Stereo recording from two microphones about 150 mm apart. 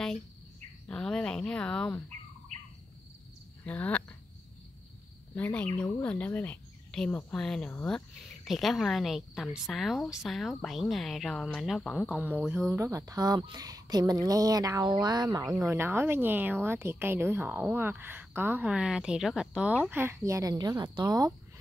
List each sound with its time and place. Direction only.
0.8 s a woman's voice: 5° left (ahead or behind)
3.6 s speech: 10° left (ahead or behind)
5.3 s a woman's voice: 10° left (ahead or behind)
12.4 s a woman's voice: 15° right (ahead or behind)